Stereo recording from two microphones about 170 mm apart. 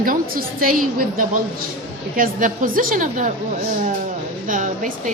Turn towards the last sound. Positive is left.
turn(degrees=-50)  # may be behind; listen again after turning